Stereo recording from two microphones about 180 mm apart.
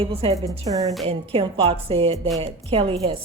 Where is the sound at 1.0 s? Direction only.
30° right (ahead or behind).